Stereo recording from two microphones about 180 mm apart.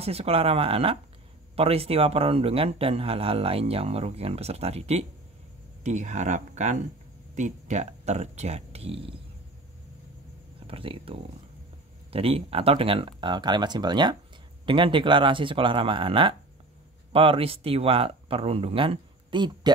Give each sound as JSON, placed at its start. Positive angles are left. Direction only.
{"t": 0.0, "sound": "speech", "side_deg": -35}
{"t": 10.7, "sound": "speech", "side_deg": -30}